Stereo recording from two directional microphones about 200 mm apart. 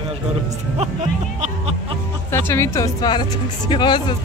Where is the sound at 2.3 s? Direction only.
10° left (ahead or behind).